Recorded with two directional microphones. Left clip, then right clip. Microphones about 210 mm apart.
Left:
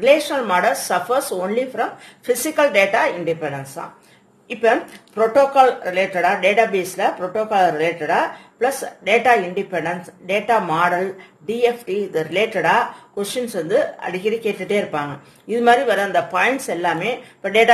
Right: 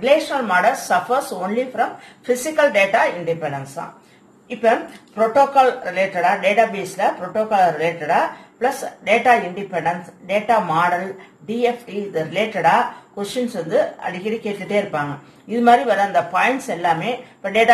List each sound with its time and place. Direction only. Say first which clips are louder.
0.0 s speech: left 1 dB; 55° left (ahead or behind)